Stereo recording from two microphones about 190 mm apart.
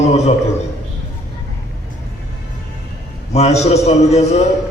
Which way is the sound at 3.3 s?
35° left (ahead or behind).